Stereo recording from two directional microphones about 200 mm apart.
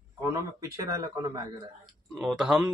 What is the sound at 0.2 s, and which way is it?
Speech, 15° right (ahead or behind).